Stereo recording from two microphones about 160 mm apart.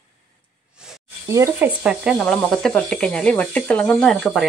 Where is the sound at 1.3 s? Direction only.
15° right (ahead or behind).